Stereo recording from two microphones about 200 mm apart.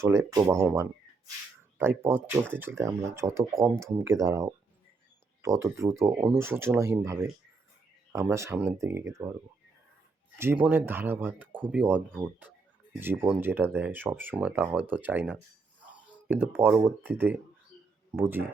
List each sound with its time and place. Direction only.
0.0 s speech: 15° right (ahead or behind)
10.3 s speech: 10° right (ahead or behind)
15.9 s a sound: 10° right (ahead or behind)
16.6 s speech: 10° right (ahead or behind)